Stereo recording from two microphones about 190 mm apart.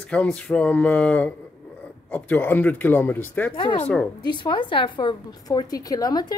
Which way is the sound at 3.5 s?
25° left (ahead or behind).